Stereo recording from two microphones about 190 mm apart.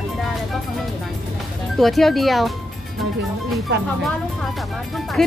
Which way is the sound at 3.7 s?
60° right (ahead or behind).